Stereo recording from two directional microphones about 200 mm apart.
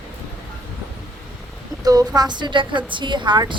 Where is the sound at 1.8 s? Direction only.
20° right (ahead or behind).